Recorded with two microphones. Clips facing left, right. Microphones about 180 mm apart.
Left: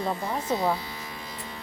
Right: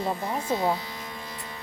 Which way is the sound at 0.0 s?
5° right (ahead or behind).